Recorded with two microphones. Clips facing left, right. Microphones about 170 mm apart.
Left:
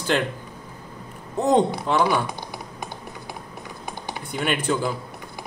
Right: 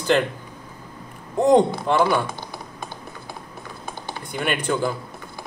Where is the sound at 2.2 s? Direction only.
20° left (ahead or behind).